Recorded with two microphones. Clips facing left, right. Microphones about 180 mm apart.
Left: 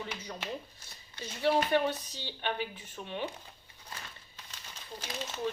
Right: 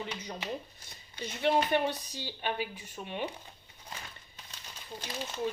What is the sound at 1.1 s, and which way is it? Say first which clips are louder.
A woman's voice: even; 20° right (ahead or behind).